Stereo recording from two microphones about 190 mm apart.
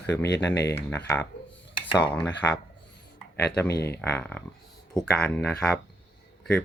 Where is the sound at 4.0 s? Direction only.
10° left (ahead or behind).